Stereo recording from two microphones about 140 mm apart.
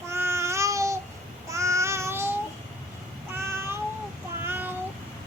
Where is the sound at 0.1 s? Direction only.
20° right (ahead or behind).